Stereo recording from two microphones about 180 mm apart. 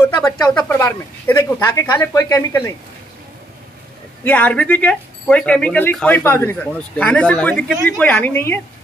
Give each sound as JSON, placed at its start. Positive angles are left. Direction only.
{"t": 0.6, "sound": "speech", "side_deg": 15}
{"t": 4.2, "sound": "speech", "side_deg": 10}